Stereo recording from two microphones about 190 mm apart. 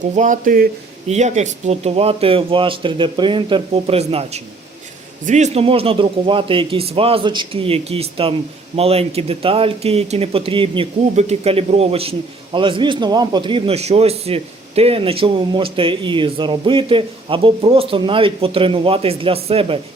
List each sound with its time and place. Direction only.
0.1 s speech: 40° right (ahead or behind)
1.0 s a man's voice: 35° right (ahead or behind)